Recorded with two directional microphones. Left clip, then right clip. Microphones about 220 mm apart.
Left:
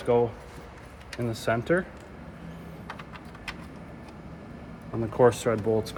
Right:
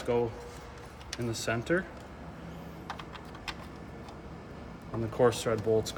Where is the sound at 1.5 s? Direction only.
20° left (ahead or behind).